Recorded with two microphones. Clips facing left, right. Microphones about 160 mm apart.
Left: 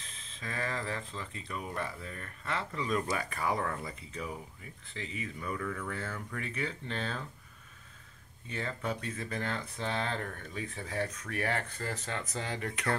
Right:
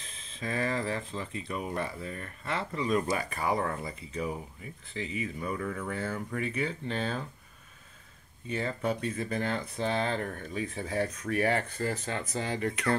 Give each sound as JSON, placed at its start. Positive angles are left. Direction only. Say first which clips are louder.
{"t": 0.4, "sound": "speech", "louder": "right 6 dB", "side_deg": -20}
{"t": 8.5, "sound": "speech", "louder": "right 5 dB", "side_deg": -15}